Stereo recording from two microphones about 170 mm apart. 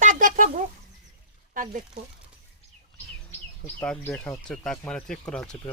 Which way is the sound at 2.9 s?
10° left (ahead or behind).